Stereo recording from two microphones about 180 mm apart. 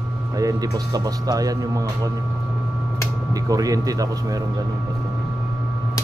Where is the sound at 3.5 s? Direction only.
20° right (ahead or behind).